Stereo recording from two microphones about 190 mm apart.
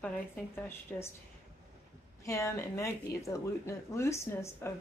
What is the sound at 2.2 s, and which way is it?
Speech, 15° left (ahead or behind).